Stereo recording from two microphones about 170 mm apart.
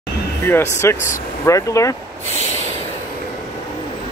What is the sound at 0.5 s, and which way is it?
Speech, 15° left (ahead or behind).